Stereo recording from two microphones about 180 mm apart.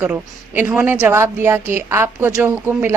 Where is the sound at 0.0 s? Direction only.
10° right (ahead or behind).